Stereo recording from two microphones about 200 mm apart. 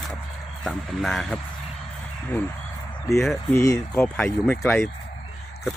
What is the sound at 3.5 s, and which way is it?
Speech, 15° left (ahead or behind).